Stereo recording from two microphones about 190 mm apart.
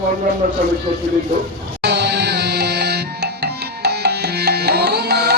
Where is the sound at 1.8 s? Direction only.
60° right (ahead or behind).